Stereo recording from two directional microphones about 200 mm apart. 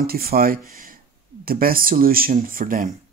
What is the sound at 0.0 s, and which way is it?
Speech, 50° right (ahead or behind).